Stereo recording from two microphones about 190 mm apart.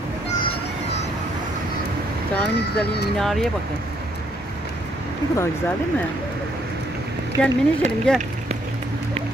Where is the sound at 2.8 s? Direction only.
60° left (ahead or behind).